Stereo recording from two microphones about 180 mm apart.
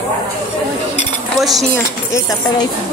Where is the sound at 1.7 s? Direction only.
20° left (ahead or behind).